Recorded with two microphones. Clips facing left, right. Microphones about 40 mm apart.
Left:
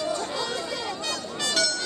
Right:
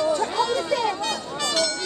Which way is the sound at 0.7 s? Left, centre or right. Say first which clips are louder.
Right 8 dB; right.